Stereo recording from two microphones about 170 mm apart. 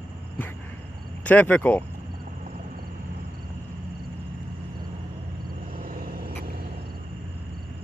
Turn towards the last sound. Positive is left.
turn(degrees=-60)  # may be behind; listen again after turning